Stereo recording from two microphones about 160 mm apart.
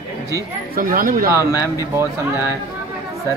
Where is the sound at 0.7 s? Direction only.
60° right (ahead or behind).